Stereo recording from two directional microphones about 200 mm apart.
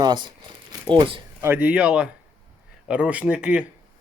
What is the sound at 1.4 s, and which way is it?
A man's voice, 10° right (ahead or behind).